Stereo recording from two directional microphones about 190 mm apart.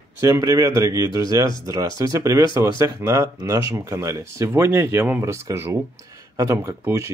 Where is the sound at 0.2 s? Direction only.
20° right (ahead or behind).